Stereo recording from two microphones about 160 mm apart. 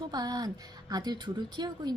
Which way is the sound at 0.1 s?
25° right (ahead or behind).